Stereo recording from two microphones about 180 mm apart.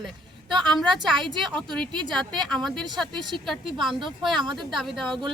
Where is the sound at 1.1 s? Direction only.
25° right (ahead or behind).